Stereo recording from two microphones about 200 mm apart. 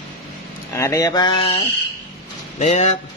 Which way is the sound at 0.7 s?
15° left (ahead or behind).